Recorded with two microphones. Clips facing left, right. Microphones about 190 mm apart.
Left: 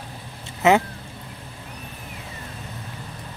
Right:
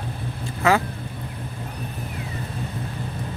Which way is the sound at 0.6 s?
20° left (ahead or behind).